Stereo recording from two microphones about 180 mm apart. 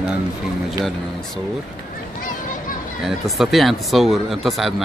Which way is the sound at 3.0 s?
Centre (ahead or behind).